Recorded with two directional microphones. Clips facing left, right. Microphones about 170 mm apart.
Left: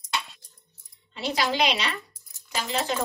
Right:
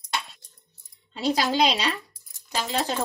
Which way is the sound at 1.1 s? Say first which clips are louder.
Right 3 dB; 35° right (ahead or behind).